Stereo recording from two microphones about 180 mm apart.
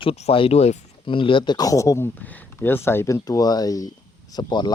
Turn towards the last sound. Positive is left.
turn(degrees=25)  # may be behind; listen again after turning